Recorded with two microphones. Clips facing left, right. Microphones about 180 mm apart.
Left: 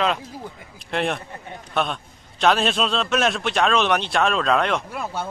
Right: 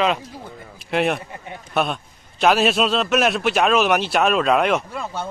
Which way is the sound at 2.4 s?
5° right (ahead or behind).